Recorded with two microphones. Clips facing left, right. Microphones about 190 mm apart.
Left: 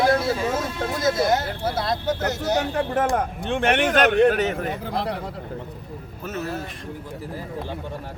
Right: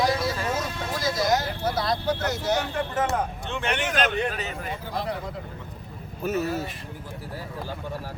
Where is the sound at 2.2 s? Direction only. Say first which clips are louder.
Left 2 dB; 40° left (ahead or behind).